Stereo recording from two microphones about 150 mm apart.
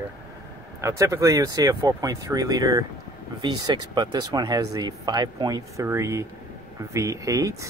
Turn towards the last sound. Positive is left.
turn(degrees=-20)  # may be behind; listen again after turning